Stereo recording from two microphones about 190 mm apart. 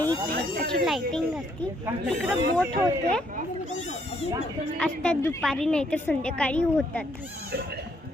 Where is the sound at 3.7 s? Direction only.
40° left (ahead or behind).